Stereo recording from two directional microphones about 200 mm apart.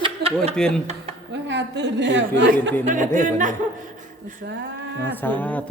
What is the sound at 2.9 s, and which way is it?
Speech, 40° right (ahead or behind).